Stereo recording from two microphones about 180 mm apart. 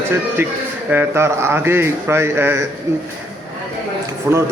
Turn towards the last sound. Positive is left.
turn(degrees=-10)  # may be behind; listen again after turning